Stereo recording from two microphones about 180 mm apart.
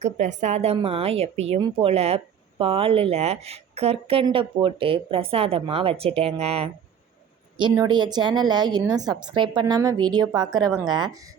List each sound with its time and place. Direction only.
0.0 s speech: 40° right (ahead or behind); by 11.2 s 20° right (ahead or behind)